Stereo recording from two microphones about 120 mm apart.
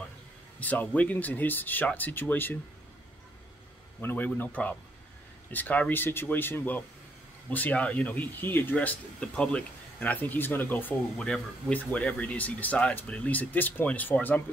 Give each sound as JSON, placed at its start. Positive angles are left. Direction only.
{"t": 0.6, "sound": "speech", "side_deg": 15}
{"t": 4.0, "sound": "speech", "side_deg": 15}